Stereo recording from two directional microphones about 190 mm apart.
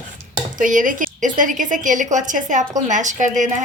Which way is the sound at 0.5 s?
45° right (ahead or behind).